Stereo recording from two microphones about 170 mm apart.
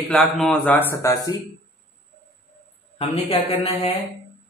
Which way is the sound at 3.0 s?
35° left (ahead or behind).